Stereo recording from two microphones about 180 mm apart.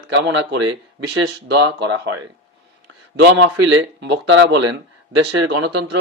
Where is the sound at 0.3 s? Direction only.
90° right.